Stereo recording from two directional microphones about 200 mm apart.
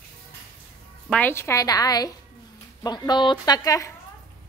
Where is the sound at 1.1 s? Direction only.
10° left (ahead or behind).